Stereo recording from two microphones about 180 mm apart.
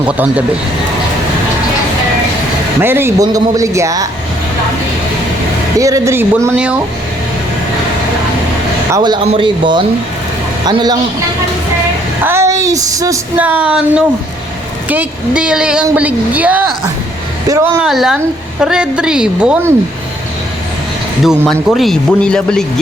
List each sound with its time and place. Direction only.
2.8 s a woman's voice: 15° right (ahead or behind)
5.8 s a woman's voice: 15° right (ahead or behind)
8.9 s speech: 25° right (ahead or behind)
12.2 s a sound: 15° right (ahead or behind)
13.4 s a woman's voice: 5° right (ahead or behind)
17.8 s speech: centre (ahead or behind)
21.2 s speech: centre (ahead or behind)